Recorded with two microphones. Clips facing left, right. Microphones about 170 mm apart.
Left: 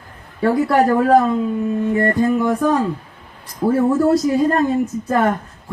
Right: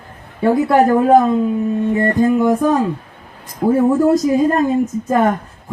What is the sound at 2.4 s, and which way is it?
A man's voice, 20° right (ahead or behind).